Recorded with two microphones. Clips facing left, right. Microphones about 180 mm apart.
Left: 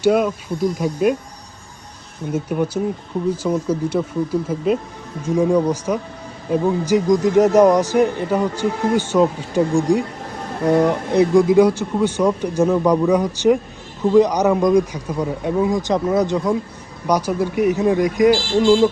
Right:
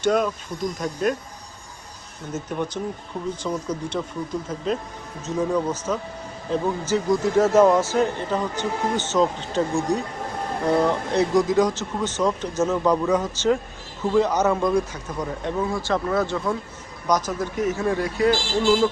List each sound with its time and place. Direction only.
0.0 s speech: 5° left (ahead or behind)
2.3 s speech: 10° left (ahead or behind)